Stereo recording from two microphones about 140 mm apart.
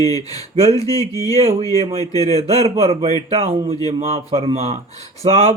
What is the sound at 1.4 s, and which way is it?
Speech, 45° right (ahead or behind).